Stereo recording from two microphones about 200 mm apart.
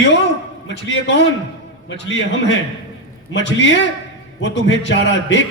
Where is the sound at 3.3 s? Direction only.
65° left (ahead or behind).